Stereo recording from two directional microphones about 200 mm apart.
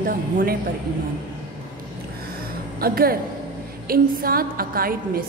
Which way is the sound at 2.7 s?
50° right (ahead or behind).